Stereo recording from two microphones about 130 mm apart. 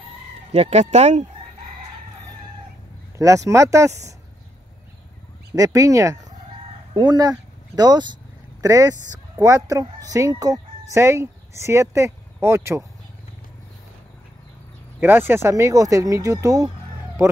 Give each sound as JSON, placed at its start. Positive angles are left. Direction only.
{"t": 0.5, "sound": "speech", "side_deg": -55}
{"t": 3.2, "sound": "speech", "side_deg": -25}
{"t": 5.5, "sound": "speech", "side_deg": -25}
{"t": 15.0, "sound": "speech", "side_deg": -15}